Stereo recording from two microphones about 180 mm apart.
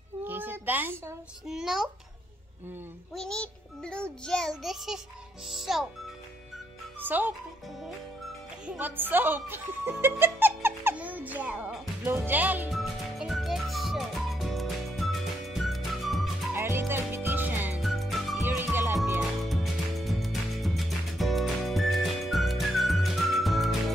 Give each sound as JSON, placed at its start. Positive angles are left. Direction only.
{"t": 0.2, "sound": "a child's voice", "side_deg": -10}
{"t": 3.2, "sound": "child singing", "side_deg": 5}
{"t": 7.0, "sound": "speech", "side_deg": -10}
{"t": 8.6, "sound": "speech", "side_deg": -10}
{"t": 12.0, "sound": "music", "side_deg": -10}
{"t": 16.5, "sound": "music", "side_deg": -15}
{"t": 18.5, "sound": "music", "side_deg": -10}
{"t": 19.1, "sound": "music", "side_deg": 0}